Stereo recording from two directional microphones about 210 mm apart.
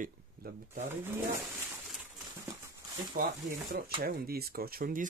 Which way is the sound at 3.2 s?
40° right (ahead or behind).